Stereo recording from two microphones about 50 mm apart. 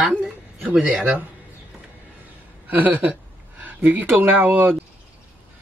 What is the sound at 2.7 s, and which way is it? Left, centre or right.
A man's voice, right.